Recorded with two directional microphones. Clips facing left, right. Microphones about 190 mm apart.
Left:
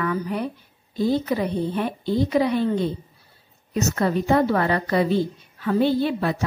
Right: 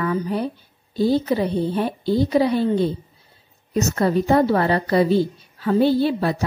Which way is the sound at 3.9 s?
35° right (ahead or behind).